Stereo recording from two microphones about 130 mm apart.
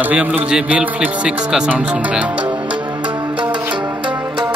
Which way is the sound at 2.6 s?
35° right (ahead or behind).